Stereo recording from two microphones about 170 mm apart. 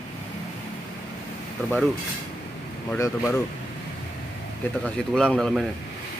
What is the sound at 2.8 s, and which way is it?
Speech, 15° left (ahead or behind).